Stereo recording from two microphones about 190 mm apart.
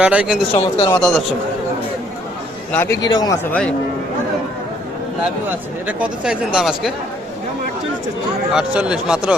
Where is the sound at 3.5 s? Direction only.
5° left (ahead or behind).